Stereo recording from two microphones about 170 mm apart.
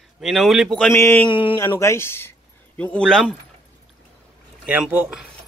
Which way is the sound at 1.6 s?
15° left (ahead or behind).